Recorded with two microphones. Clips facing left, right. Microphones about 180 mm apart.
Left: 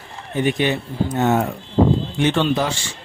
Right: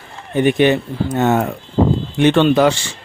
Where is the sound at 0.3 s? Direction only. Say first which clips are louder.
Right 6 dB; 60° right (ahead or behind).